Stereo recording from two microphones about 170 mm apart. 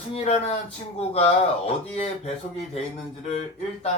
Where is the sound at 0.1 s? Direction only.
40° left (ahead or behind).